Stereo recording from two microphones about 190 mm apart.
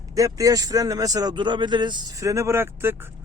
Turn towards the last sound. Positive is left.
turn(degrees=-10)  # may be behind; listen again after turning